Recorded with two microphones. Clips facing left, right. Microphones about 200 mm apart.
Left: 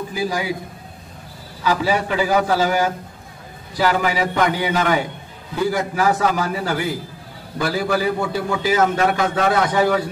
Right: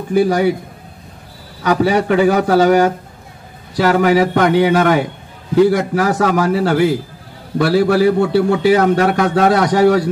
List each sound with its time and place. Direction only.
0.1 s a man's voice: 60° right (ahead or behind)
1.6 s a man's voice: 65° right (ahead or behind)
5.6 s a man's voice: 75° right (ahead or behind)